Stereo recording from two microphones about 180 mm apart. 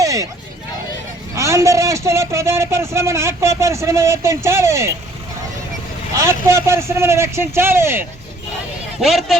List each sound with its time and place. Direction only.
0.0 s a sound: 15° right (ahead or behind)
1.4 s a man's voice: 15° right (ahead or behind)
6.1 s a man's voice: 15° right (ahead or behind)
9.0 s speech: centre (ahead or behind)